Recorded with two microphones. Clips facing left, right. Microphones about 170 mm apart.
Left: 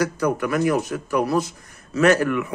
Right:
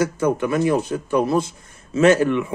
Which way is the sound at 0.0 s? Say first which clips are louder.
Right 2 dB; 25° right (ahead or behind).